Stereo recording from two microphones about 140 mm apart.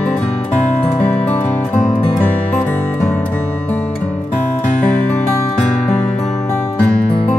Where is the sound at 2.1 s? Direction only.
10° left (ahead or behind).